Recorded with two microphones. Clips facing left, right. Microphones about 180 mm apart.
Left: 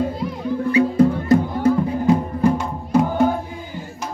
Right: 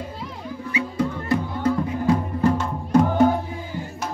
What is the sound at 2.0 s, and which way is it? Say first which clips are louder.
Music: left 2 dB; 15° left (ahead or behind).